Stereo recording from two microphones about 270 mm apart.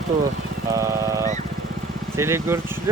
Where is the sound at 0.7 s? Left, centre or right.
Centre.